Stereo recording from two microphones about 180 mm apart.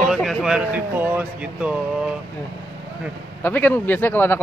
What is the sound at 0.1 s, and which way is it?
Speech, centre (ahead or behind).